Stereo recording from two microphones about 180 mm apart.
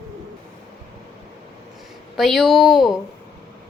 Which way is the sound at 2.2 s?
Centre (ahead or behind).